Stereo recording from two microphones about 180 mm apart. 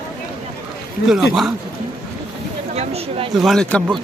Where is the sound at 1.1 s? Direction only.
Centre (ahead or behind).